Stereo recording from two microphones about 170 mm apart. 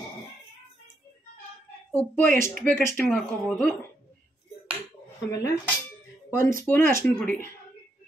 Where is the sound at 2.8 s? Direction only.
10° left (ahead or behind).